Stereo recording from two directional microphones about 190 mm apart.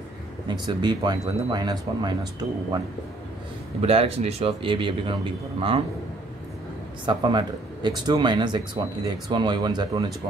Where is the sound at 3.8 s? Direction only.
30° right (ahead or behind).